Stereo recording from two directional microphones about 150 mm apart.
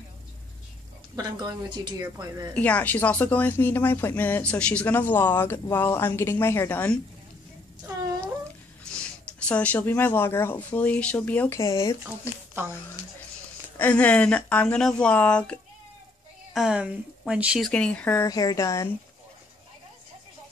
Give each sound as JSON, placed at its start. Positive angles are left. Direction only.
{"t": 1.1, "sound": "a woman's voice", "side_deg": -25}
{"t": 2.5, "sound": "speech", "side_deg": 10}
{"t": 8.0, "sound": "a sound", "side_deg": -25}
{"t": 8.9, "sound": "a sound", "side_deg": 5}
{"t": 9.5, "sound": "speech", "side_deg": 10}
{"t": 13.7, "sound": "speech", "side_deg": 10}
{"t": 16.5, "sound": "speech", "side_deg": -5}
{"t": 18.2, "sound": "a woman's voice", "side_deg": 25}